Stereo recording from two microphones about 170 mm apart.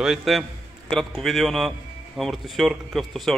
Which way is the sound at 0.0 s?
Centre (ahead or behind).